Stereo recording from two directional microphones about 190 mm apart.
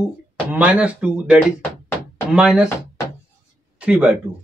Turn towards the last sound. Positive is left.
turn(degrees=-5)  # may be behind; listen again after turning